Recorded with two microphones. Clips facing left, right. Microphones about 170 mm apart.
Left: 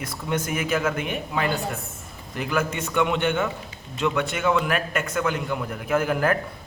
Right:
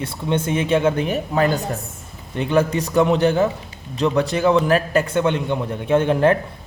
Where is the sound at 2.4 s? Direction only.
30° right (ahead or behind).